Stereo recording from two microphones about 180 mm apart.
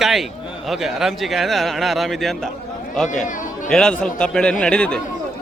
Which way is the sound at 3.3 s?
45° left (ahead or behind).